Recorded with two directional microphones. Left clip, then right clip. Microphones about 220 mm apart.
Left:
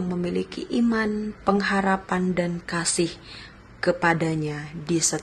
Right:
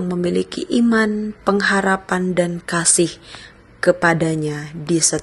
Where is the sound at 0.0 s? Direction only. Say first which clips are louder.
Right 7 dB; 25° right (ahead or behind).